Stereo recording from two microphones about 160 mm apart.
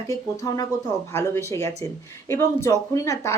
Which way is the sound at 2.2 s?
15° left (ahead or behind).